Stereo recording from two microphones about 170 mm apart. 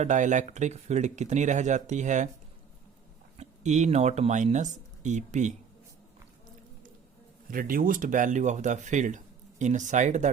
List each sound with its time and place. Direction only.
0.0 s speech: 45° right (ahead or behind)
3.3 s speech: 40° right (ahead or behind)
7.5 s speech: 55° right (ahead or behind)